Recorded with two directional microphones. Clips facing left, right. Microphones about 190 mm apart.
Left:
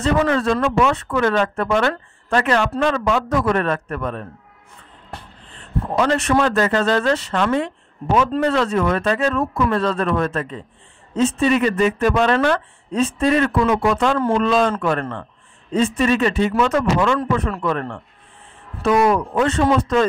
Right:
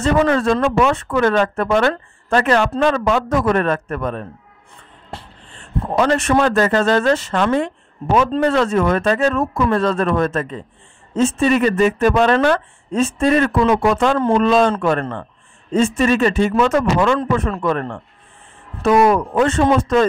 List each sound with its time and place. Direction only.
0.0 s speech: 45° right (ahead or behind)
5.6 s speech: 45° right (ahead or behind)
19.0 s speech: 45° right (ahead or behind)